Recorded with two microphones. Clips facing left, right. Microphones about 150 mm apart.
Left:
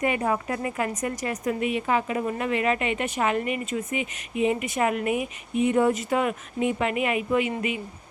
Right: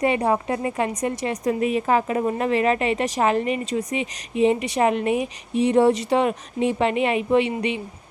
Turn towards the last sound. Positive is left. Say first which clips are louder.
# right 4 dB
turn(degrees=-30)  # may be behind; listen again after turning